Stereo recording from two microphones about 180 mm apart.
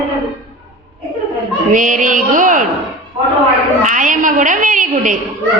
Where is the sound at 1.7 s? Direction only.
45° right (ahead or behind).